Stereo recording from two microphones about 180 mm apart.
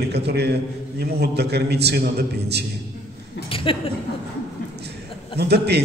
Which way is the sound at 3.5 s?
30° left (ahead or behind).